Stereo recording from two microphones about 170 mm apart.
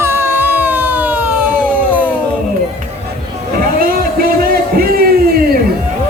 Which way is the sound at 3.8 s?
60° right (ahead or behind).